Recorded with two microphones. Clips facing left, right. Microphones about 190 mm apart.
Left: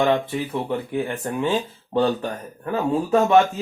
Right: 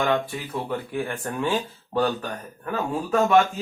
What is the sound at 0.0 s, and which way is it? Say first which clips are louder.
Speech: left 4 dB; 20° left (ahead or behind).